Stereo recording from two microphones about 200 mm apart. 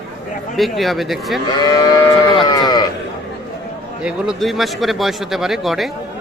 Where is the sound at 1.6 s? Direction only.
20° left (ahead or behind).